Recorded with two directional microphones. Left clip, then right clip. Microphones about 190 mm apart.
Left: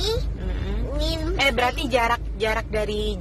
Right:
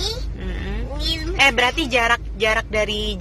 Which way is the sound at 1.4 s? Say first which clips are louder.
Right 5 dB; 30° right (ahead or behind).